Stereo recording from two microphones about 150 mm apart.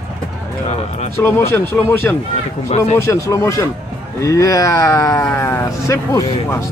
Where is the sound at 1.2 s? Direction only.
15° left (ahead or behind).